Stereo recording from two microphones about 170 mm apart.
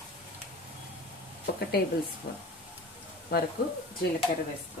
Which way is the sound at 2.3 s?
65° left (ahead or behind).